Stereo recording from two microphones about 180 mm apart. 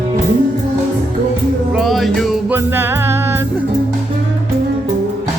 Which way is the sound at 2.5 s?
10° right (ahead or behind).